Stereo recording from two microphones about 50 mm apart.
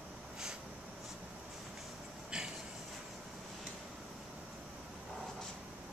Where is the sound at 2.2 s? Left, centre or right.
Centre.